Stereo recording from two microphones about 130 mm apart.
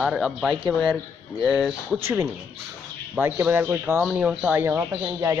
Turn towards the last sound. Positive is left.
turn(degrees=-20)  # may be behind; listen again after turning